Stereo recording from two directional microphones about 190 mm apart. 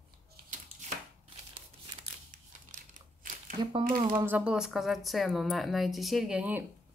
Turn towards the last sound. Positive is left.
turn(degrees=-10)  # may be behind; listen again after turning